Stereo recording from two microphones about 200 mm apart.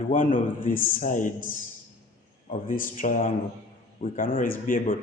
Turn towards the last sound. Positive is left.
turn(degrees=45)  # may be behind; listen again after turning